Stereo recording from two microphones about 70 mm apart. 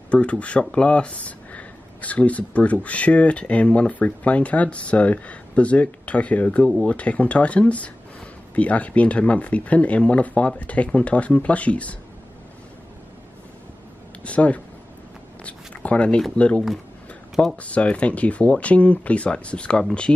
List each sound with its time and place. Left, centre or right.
0.1 s speech: centre
14.2 s speech: centre
15.4 s a sound: centre
16.3 s speech: centre